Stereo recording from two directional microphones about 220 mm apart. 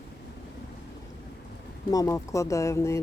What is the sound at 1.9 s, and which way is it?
Speech, 15° left (ahead or behind).